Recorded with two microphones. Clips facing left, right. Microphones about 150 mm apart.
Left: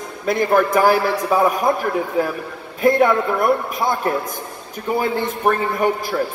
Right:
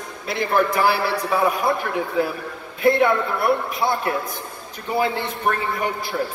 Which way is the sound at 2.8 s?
45° left (ahead or behind).